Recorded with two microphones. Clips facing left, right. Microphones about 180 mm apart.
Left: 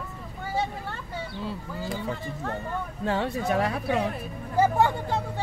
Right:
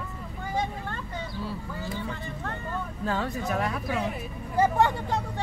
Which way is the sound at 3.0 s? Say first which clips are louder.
Left 3 dB; 25° left (ahead or behind).